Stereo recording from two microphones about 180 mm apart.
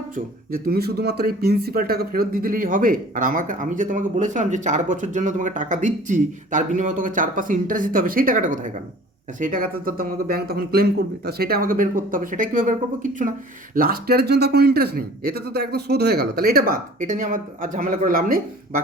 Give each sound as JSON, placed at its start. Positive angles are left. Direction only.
{"t": 0.5, "sound": "speech", "side_deg": -55}